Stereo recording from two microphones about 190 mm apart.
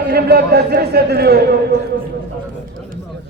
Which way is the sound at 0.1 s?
55° right (ahead or behind).